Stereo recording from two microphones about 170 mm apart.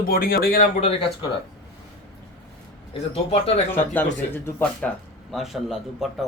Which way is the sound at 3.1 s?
35° left (ahead or behind).